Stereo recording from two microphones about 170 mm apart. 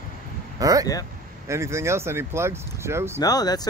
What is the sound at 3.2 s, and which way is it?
Speech, 20° left (ahead or behind).